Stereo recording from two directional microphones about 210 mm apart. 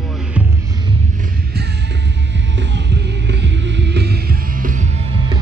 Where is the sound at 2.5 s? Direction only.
55° right (ahead or behind); by 4.8 s 40° right (ahead or behind).